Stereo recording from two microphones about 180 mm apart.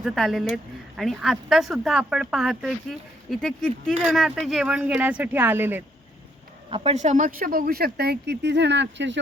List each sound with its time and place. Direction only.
0.0 s speech: centre (ahead or behind)
6.7 s speech: 30° right (ahead or behind); by 9.1 s 75° right (ahead or behind)